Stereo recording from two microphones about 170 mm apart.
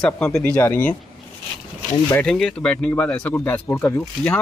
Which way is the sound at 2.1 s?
5° left (ahead or behind).